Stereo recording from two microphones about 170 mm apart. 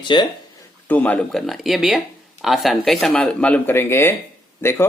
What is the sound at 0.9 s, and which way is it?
Speech, 10° left (ahead or behind).